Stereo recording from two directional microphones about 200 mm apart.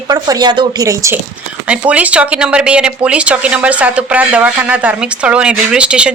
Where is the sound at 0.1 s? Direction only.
20° right (ahead or behind).